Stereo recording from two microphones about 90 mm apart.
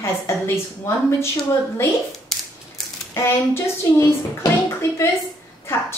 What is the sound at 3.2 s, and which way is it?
A woman's voice, 30° left (ahead or behind).